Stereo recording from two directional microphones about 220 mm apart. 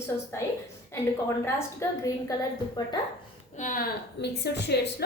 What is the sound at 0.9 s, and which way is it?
A woman's voice, 10° left (ahead or behind).